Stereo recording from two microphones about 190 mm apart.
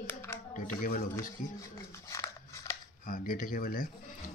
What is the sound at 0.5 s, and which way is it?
Speech, 45° left (ahead or behind).